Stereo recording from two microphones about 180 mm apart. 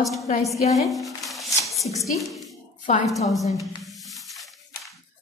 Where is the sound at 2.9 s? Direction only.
40° left (ahead or behind).